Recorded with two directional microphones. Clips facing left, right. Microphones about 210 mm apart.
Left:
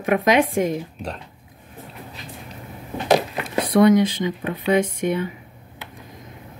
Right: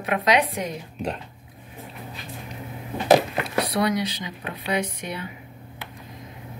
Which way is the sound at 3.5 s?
50° left (ahead or behind).